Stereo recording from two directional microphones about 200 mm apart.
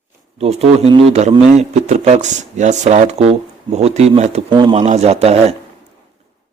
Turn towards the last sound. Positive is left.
turn(degrees=-30)  # may be behind; listen again after turning